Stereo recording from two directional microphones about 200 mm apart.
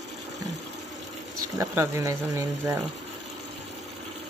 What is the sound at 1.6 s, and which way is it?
Speech, 15° right (ahead or behind).